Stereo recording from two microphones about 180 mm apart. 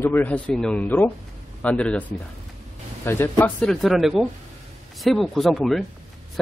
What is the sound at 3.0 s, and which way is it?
Speech, 10° left (ahead or behind).